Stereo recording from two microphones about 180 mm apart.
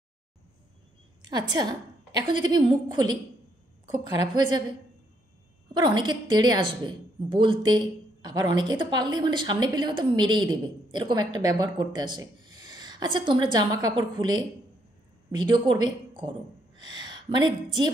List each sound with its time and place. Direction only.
1.2 s a woman's voice: 25° right (ahead or behind)
5.8 s a woman's voice: 25° right (ahead or behind)